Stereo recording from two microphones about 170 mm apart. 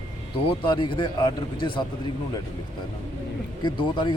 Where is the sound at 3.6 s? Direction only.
25° left (ahead or behind).